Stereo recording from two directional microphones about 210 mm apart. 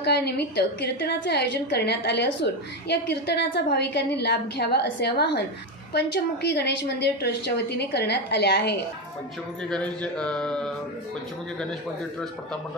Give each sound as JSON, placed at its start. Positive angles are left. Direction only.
{"t": 0.0, "sound": "a woman's voice", "side_deg": 50}
{"t": 9.7, "sound": "speech", "side_deg": 5}